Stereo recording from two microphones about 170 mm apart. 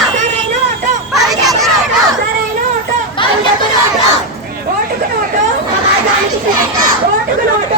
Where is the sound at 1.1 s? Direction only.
Centre (ahead or behind).